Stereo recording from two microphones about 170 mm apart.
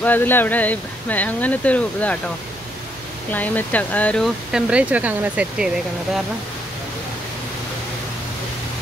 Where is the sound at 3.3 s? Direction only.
10° left (ahead or behind); by 5.7 s 10° right (ahead or behind).